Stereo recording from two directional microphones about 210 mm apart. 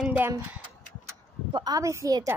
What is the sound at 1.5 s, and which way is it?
Speech, 20° right (ahead or behind).